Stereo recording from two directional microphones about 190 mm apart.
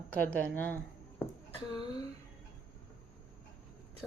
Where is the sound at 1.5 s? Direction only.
25° left (ahead or behind).